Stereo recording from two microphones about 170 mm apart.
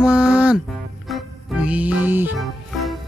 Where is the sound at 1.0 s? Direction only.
5° right (ahead or behind).